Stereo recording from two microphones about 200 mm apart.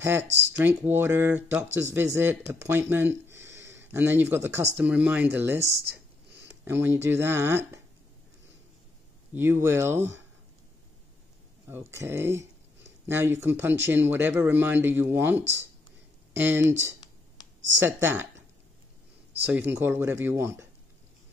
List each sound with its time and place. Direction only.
0.3 s speech: 65° right (ahead or behind)
0.6 s speech: 10° right (ahead or behind)
3.3 s a sound: 15° right (ahead or behind)
3.8 s speech: 10° right (ahead or behind)
9.3 s speech: 10° right (ahead or behind)
11.6 s speech: 15° right (ahead or behind)
17.8 s speech: 10° right (ahead or behind)
19.4 s speech: 10° right (ahead or behind)